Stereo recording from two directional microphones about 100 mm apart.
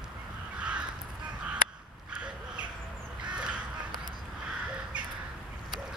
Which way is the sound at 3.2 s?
10° right (ahead or behind).